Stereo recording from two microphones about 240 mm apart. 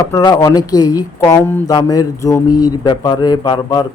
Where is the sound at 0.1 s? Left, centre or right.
Centre.